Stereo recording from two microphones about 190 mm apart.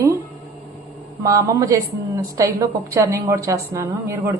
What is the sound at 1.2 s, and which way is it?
A woman's voice, 15° right (ahead or behind).